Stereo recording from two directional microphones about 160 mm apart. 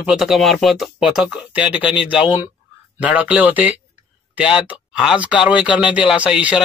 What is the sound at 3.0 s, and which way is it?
Speech, 10° right (ahead or behind).